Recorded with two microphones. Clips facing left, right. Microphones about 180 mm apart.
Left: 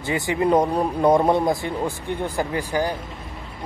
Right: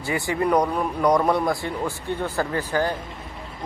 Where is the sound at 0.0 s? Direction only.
20° left (ahead or behind).